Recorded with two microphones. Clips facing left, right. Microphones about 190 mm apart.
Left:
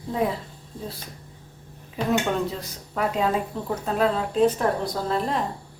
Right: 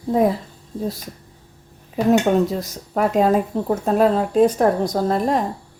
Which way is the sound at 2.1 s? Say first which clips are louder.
Right 7 dB; 45° right (ahead or behind).